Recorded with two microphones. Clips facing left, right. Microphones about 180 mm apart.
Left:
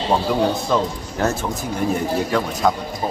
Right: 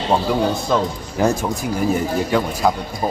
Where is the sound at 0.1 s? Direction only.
Centre (ahead or behind).